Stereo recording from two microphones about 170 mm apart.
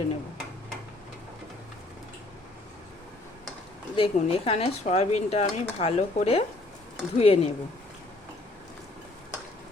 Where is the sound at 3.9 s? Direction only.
35° left (ahead or behind).